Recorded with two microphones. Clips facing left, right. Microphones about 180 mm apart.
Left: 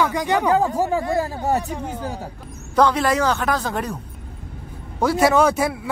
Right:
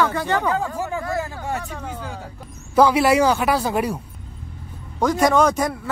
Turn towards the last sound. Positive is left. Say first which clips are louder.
# left 1 dB
turn(degrees=5)  # may be behind; listen again after turning